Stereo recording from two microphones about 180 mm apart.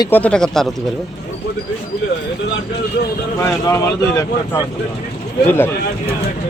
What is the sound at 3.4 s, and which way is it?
Speech, 15° left (ahead or behind).